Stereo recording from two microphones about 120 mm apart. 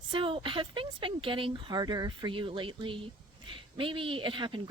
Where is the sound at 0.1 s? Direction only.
45° right (ahead or behind).